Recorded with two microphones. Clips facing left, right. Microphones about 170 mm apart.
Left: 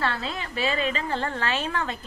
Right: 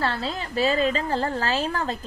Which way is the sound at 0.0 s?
35° right (ahead or behind).